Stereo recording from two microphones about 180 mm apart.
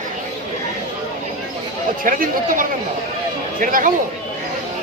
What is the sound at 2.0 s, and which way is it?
Speech, 50° right (ahead or behind).